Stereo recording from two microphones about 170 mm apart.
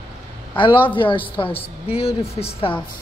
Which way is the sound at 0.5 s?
30° left (ahead or behind).